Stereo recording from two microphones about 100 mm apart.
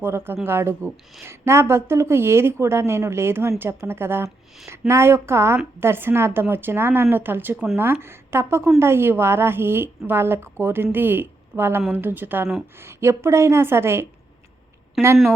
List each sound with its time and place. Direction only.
0.0 s a woman's voice: 25° right (ahead or behind)
15.0 s speech: centre (ahead or behind)